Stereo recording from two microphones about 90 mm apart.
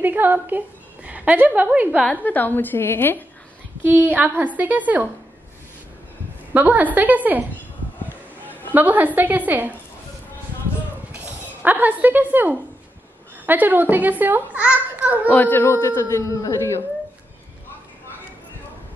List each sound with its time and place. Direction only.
0.0 s a woman's voice: 20° right (ahead or behind)
2.2 s a woman's voice: 20° left (ahead or behind)
3.8 s a child's voice: 20° right (ahead or behind)
6.5 s a child's voice: 20° right (ahead or behind)
8.5 s a woman's voice: 20° right (ahead or behind)
11.1 s a child's voice: 20° right (ahead or behind)
15.3 s a man's voice: 20° left (ahead or behind)